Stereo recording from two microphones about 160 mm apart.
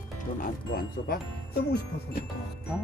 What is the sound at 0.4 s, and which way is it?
Speech, 65° left (ahead or behind).